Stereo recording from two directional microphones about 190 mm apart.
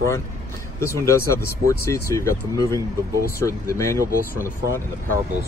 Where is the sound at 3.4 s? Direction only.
15° left (ahead or behind).